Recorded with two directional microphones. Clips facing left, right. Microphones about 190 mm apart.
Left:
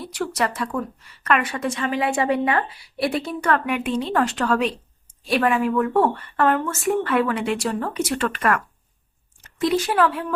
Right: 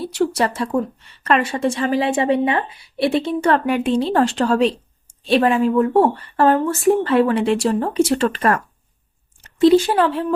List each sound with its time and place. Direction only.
0.0 s a woman's voice: 30° right (ahead or behind)